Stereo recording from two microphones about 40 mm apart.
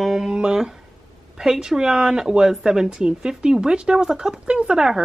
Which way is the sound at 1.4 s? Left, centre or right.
Centre.